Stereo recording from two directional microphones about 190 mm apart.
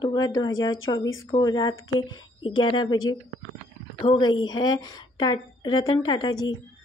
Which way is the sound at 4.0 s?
25° left (ahead or behind).